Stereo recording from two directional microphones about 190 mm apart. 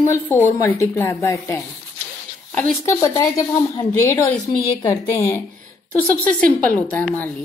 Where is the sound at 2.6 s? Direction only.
15° left (ahead or behind).